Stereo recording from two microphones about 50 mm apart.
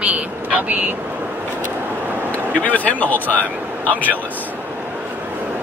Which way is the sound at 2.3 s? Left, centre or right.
Left.